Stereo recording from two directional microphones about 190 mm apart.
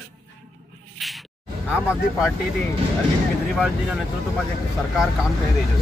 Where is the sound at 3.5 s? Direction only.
Centre (ahead or behind).